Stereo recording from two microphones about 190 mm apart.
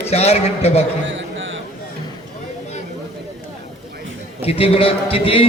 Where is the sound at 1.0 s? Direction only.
80° right.